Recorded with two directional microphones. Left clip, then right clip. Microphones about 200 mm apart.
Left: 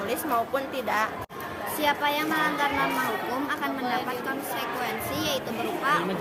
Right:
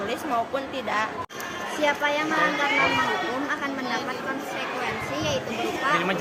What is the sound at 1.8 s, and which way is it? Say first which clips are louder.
Speech: right 1 dB; 20° left (ahead or behind).